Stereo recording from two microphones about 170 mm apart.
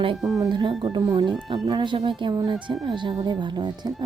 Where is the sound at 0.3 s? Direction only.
25° right (ahead or behind).